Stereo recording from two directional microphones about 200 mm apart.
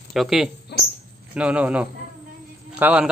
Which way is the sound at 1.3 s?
5° right (ahead or behind).